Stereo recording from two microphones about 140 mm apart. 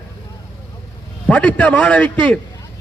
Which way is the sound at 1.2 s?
10° left (ahead or behind).